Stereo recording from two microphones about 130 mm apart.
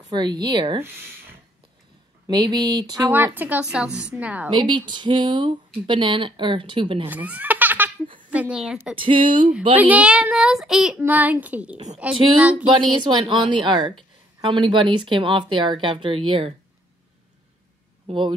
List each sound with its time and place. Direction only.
0.0 s speech: 35° right (ahead or behind)
2.2 s speech: 35° right (ahead or behind)
3.3 s a child's voice: 10° right (ahead or behind)
4.5 s speech: 40° right (ahead or behind)
7.1 s baby laughter: 15° right (ahead or behind)
8.3 s speech: 10° right (ahead or behind)
8.9 s speech: 40° right (ahead or behind)
9.8 s a child's voice: 10° right (ahead or behind)
11.0 s a child's voice: 15° right (ahead or behind)
12.6 s speech: 35° right (ahead or behind)
18.0 s speech: 40° right (ahead or behind)